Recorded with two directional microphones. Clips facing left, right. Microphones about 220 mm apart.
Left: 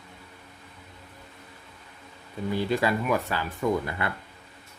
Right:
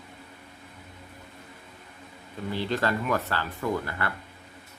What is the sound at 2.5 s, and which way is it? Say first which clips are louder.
Speech: left 2 dB; 10° left (ahead or behind).